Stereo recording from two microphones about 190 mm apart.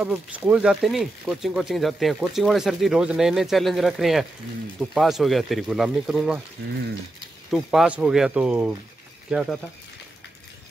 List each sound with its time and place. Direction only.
0.0 s speech: 5° right (ahead or behind)
7.5 s speech: 5° right (ahead or behind)